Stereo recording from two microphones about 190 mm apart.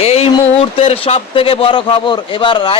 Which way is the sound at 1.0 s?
30° left (ahead or behind).